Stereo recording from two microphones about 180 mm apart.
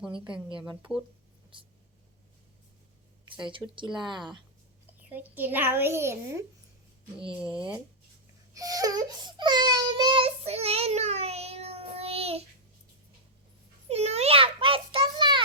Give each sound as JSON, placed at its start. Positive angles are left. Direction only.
{"t": 0.8, "sound": "speech", "side_deg": -5}
{"t": 1.5, "sound": "speech", "side_deg": -25}
{"t": 3.6, "sound": "a child's voice", "side_deg": -10}
{"t": 4.9, "sound": "a child's voice", "side_deg": -10}
{"t": 7.5, "sound": "speech", "side_deg": -5}
{"t": 8.5, "sound": "baby cry", "side_deg": -20}
{"t": 13.8, "sound": "a sound", "side_deg": -35}